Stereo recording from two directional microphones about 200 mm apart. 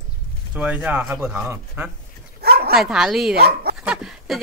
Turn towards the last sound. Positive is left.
turn(degrees=0)  # may be behind; listen again after turning